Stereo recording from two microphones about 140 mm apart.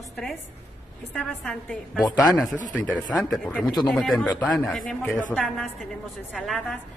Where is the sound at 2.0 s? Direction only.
25° left (ahead or behind).